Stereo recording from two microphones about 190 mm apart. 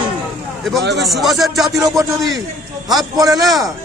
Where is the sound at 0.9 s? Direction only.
Centre (ahead or behind).